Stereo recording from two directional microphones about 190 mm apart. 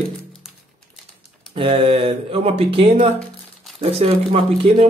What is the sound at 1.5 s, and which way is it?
Speech, 30° right (ahead or behind).